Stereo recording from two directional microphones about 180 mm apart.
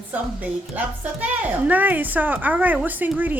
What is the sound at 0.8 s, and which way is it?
A woman's voice, 10° right (ahead or behind).